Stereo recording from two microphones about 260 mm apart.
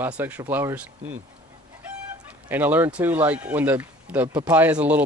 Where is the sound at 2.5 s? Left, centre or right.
Centre.